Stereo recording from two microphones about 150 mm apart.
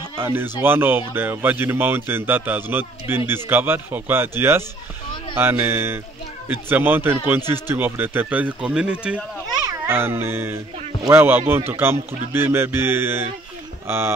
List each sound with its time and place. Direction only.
0.2 s speech: 15° right (ahead or behind)
9.5 s a child's voice: 20° right (ahead or behind)